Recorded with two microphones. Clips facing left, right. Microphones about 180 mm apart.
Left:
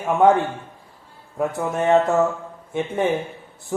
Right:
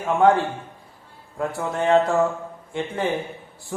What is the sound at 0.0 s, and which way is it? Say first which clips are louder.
A man's voice: left 1 dB; 20° left (ahead or behind).